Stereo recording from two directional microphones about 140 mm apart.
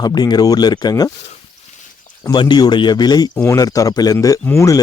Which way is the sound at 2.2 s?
30° left (ahead or behind).